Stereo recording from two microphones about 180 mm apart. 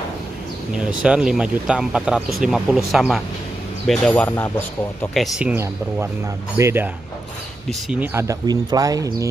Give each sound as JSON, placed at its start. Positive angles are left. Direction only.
{"t": 0.7, "sound": "speech", "side_deg": -5}
{"t": 7.9, "sound": "speech", "side_deg": -10}